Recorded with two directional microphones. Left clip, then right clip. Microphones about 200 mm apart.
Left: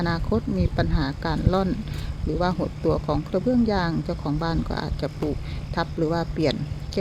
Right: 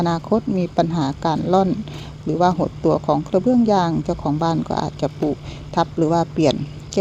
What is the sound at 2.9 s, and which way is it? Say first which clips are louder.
Speech: right 8 dB; 20° right (ahead or behind).